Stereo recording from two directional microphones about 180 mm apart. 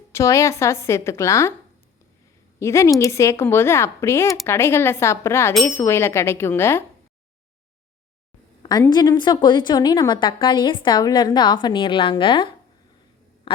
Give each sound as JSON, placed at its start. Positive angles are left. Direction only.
{"t": 0.1, "sound": "speech", "side_deg": 15}
{"t": 2.6, "sound": "speech", "side_deg": 15}
{"t": 8.6, "sound": "a woman's voice", "side_deg": 20}